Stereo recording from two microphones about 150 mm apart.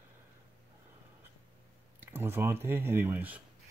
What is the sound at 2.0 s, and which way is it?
Speech, 15° right (ahead or behind).